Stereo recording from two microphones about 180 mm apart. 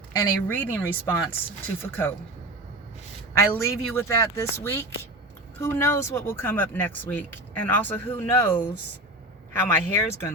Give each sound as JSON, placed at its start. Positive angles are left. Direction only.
{"t": 0.1, "sound": "speech", "side_deg": 10}
{"t": 3.3, "sound": "speech", "side_deg": 15}